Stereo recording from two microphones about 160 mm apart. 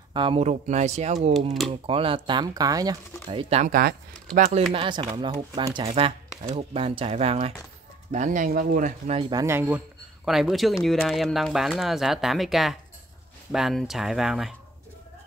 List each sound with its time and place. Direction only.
0.1 s speech: 30° right (ahead or behind)
3.3 s speech: 35° right (ahead or behind)
4.7 s speech: 30° right (ahead or behind)
8.1 s speech: 50° right (ahead or behind)
9.3 s speech: 20° right (ahead or behind)
10.2 s speech: centre (ahead or behind)